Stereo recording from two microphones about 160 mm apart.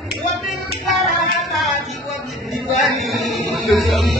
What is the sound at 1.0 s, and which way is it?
Music, centre (ahead or behind).